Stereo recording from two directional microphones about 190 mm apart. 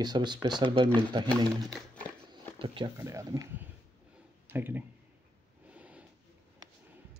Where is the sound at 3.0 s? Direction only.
15° right (ahead or behind).